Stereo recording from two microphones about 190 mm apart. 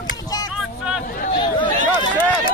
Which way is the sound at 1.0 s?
45° left (ahead or behind).